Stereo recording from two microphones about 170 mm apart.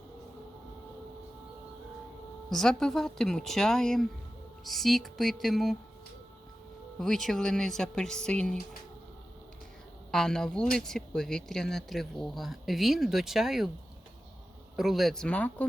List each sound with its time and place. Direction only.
2.5 s speech: 5° left (ahead or behind)
7.0 s speech: centre (ahead or behind)
10.1 s speech: 5° left (ahead or behind)
14.8 s speech: centre (ahead or behind)